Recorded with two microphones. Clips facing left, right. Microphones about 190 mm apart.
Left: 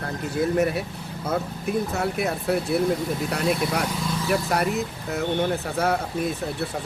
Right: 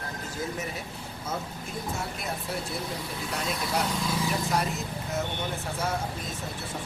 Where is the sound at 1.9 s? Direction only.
65° left (ahead or behind).